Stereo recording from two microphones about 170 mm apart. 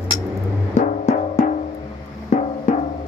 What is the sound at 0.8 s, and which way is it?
Music, 45° left (ahead or behind).